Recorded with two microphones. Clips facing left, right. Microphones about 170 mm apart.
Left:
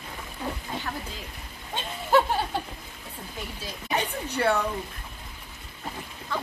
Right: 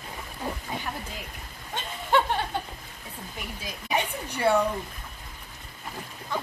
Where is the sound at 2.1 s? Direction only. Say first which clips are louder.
Left 2 dB; 5° left (ahead or behind).